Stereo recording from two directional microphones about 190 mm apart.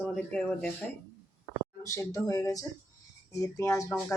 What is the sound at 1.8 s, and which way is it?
Speech, 15° left (ahead or behind).